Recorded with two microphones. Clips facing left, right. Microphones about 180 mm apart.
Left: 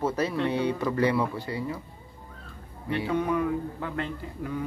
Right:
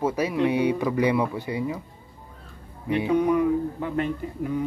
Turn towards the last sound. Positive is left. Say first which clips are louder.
# right 6 dB
turn(degrees=-15)  # may be behind; listen again after turning